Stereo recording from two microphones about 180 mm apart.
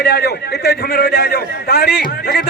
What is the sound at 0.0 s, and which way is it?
A man's voice, 65° left (ahead or behind).